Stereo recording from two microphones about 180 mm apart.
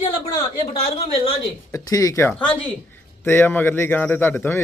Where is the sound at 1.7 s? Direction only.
20° left (ahead or behind).